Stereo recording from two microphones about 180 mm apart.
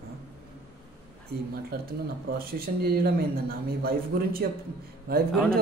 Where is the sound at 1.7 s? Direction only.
60° right (ahead or behind).